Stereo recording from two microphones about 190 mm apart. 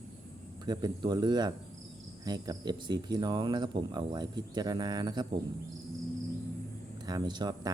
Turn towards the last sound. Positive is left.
turn(degrees=-20)  # may be behind; listen again after turning